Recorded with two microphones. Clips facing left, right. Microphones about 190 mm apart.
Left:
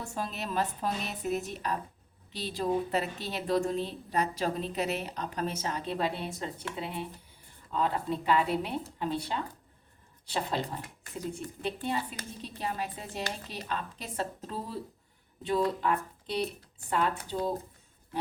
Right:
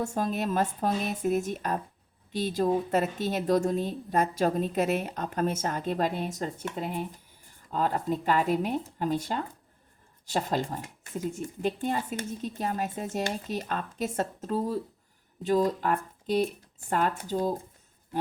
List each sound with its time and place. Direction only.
0.0 s a woman's voice: 45° right (ahead or behind)
11.6 s a woman's voice: 45° right (ahead or behind)